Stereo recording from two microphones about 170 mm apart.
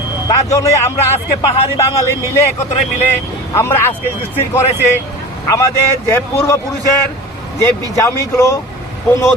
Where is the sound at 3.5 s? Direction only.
15° left (ahead or behind).